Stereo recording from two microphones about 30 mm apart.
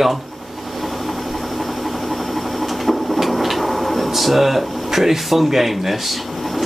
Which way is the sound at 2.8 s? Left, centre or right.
Centre.